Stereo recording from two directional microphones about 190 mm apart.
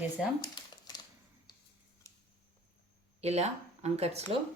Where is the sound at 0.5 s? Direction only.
20° left (ahead or behind).